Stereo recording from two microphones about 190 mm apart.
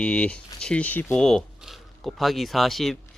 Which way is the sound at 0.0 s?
5° left (ahead or behind).